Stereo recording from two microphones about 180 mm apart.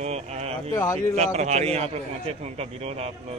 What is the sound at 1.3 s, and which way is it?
A man's voice, 35° right (ahead or behind).